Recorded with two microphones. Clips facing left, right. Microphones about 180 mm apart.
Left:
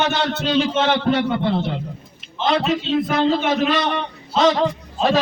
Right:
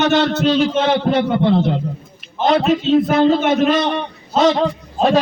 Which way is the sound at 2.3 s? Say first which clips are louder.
Right 4 dB; 40° right (ahead or behind).